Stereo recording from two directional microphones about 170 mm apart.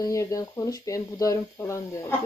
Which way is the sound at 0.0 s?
20° left (ahead or behind).